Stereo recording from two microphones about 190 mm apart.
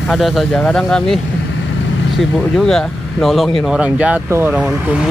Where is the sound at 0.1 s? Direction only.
Centre (ahead or behind).